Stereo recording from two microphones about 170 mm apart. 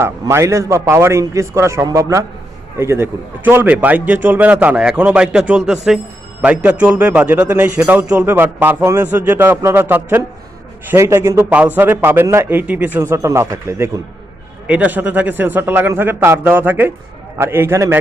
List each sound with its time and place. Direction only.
0.0 s a man's voice: 15° right (ahead or behind)